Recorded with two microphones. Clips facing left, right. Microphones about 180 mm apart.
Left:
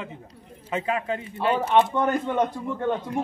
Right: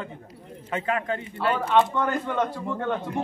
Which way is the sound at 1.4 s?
20° left (ahead or behind).